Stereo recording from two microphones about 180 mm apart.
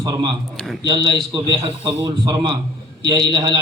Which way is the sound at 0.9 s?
25° right (ahead or behind).